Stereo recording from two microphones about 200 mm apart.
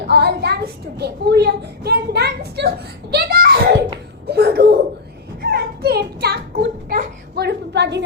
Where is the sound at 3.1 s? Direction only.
50° right (ahead or behind).